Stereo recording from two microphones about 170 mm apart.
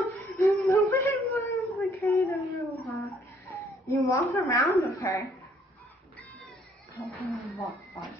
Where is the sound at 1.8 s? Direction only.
15° left (ahead or behind).